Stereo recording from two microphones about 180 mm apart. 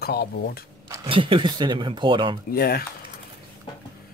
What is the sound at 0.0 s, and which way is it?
Speech, 60° left (ahead or behind).